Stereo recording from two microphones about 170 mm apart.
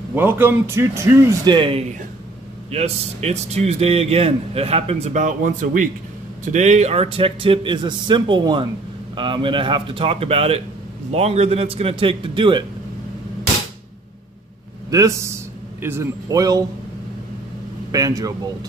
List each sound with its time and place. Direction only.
0.1 s a man's voice: 10° right (ahead or behind); by 12.6 s 30° right (ahead or behind)
14.9 s a man's voice: 20° right (ahead or behind)
17.9 s speech: 20° right (ahead or behind)